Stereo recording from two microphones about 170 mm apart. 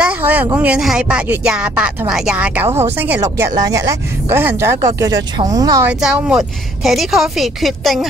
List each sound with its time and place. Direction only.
0.0 s speech: 10° right (ahead or behind)
5.9 s speech: 5° right (ahead or behind)